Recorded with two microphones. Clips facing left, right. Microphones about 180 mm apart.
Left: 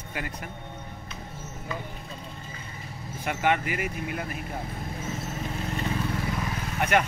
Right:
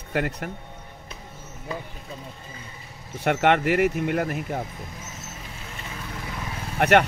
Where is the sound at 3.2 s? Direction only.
70° right (ahead or behind).